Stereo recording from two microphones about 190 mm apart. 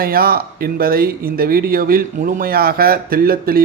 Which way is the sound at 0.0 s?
50° right (ahead or behind).